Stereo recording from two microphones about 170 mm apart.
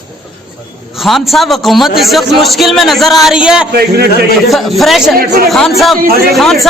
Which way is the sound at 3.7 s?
70° right (ahead or behind).